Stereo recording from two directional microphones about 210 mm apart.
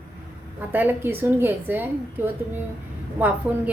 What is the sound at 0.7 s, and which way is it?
A woman's voice, 10° right (ahead or behind).